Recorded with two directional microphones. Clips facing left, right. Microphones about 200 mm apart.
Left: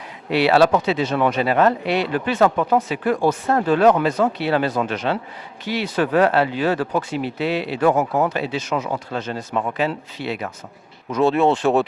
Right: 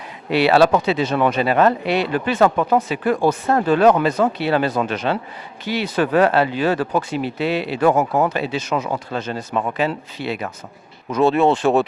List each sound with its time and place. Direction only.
0.3 s speech: 10° right (ahead or behind)
2.6 s speech: 20° right (ahead or behind)
8.3 s speech: 10° right (ahead or behind)
9.5 s speech: 25° right (ahead or behind)
9.7 s speech: 10° right (ahead or behind)